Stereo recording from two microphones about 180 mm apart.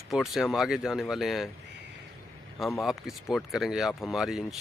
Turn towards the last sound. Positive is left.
turn(degrees=0)  # may be behind; listen again after turning